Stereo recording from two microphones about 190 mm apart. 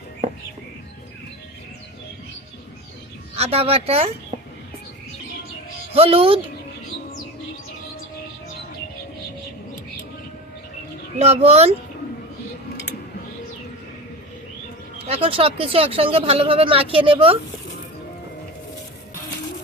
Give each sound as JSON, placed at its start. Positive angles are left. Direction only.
{"t": 3.3, "sound": "speech", "side_deg": -30}
{"t": 5.9, "sound": "speech", "side_deg": -30}
{"t": 11.2, "sound": "speech", "side_deg": -35}
{"t": 15.0, "sound": "speech", "side_deg": -30}